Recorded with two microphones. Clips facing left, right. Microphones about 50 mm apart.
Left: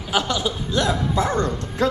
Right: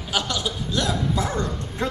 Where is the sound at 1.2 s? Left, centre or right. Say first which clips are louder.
Left 4 dB; left.